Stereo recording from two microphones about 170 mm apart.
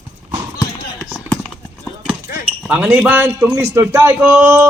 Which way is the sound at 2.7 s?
10° right (ahead or behind).